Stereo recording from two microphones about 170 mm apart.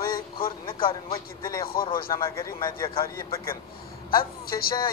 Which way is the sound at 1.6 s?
60° left (ahead or behind).